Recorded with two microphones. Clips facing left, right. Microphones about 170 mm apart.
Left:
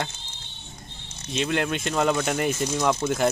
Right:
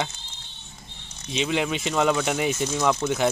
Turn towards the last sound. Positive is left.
turn(degrees=0)  # may be behind; listen again after turning